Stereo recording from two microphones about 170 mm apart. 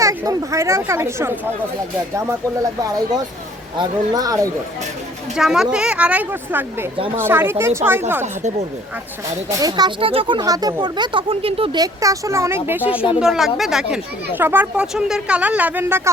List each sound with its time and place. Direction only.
0.0 s speech: 20° right (ahead or behind)
3.8 s speech: 20° right (ahead or behind)
5.4 s a woman's voice: 5° right (ahead or behind)
9.5 s speech: 20° right (ahead or behind)